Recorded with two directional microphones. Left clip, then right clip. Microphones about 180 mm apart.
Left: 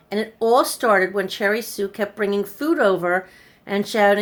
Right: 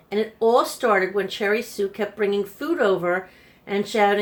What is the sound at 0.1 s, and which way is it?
Speech, 60° left (ahead or behind).